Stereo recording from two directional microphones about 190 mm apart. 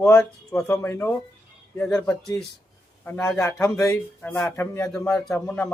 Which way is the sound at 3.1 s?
10° left (ahead or behind).